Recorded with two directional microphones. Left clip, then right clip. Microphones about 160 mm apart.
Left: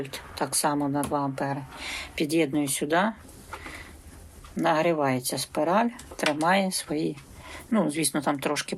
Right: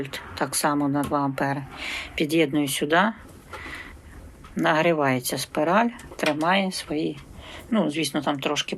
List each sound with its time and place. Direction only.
0.0 s speech: 5° left (ahead or behind)
1.8 s speech: 10° left (ahead or behind)
4.5 s speech: 5° left (ahead or behind); by 8.7 s 30° left (ahead or behind)